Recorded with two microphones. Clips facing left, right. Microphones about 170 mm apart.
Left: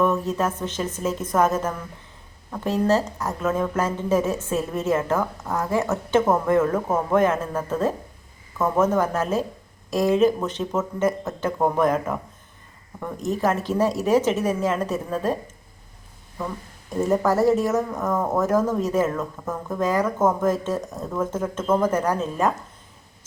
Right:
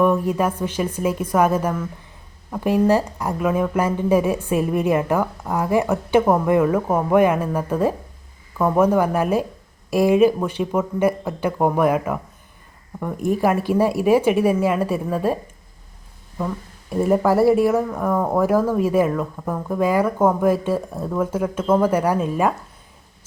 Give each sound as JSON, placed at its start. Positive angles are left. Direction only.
{"t": 0.0, "sound": "a woman's voice", "side_deg": -10}
{"t": 13.2, "sound": "a woman's voice", "side_deg": -10}
{"t": 16.9, "sound": "a woman's voice", "side_deg": -10}